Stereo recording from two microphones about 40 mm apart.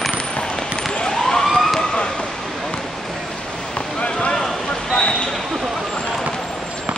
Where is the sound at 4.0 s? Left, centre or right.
Left.